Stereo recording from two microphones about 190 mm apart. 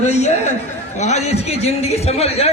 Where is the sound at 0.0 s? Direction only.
35° left (ahead or behind).